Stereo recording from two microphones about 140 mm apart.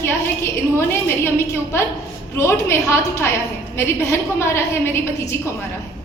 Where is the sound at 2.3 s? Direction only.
20° left (ahead or behind).